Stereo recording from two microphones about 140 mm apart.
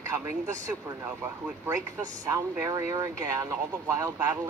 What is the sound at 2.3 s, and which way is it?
Speech, 20° right (ahead or behind).